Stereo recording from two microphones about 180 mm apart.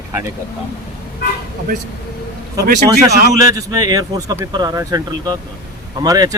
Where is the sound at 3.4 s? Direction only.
20° right (ahead or behind).